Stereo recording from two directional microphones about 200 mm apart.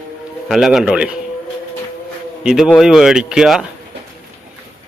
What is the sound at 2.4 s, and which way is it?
A man's voice, 5° right (ahead or behind).